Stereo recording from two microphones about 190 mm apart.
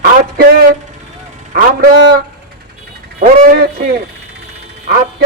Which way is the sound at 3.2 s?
50° right (ahead or behind).